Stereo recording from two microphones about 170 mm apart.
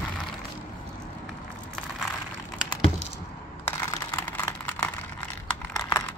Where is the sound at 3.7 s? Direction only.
15° left (ahead or behind).